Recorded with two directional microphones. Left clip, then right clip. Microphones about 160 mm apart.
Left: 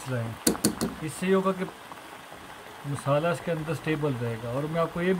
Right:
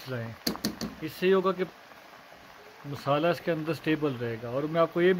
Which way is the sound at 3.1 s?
50° right (ahead or behind).